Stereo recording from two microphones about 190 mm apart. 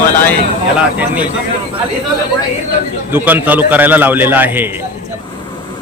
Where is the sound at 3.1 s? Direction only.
10° right (ahead or behind).